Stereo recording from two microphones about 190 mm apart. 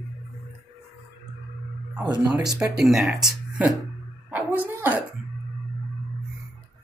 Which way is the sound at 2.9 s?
Centre (ahead or behind).